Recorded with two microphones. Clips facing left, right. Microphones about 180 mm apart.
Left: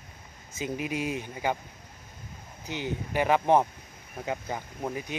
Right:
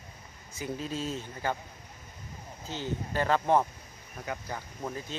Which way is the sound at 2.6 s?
15° left (ahead or behind).